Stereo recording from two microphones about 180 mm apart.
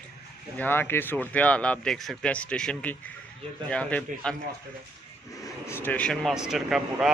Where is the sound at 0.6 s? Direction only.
10° left (ahead or behind).